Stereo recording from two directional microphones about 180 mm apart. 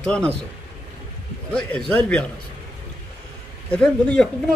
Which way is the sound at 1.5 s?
5° left (ahead or behind).